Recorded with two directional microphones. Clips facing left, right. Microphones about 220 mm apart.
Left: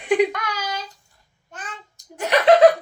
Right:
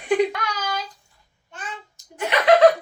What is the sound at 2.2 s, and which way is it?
Chuckle, 40° left (ahead or behind).